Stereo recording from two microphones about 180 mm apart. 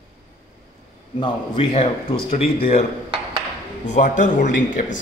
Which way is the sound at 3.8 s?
45° left (ahead or behind).